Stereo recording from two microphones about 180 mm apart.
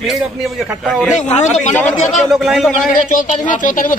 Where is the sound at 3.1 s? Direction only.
45° left (ahead or behind).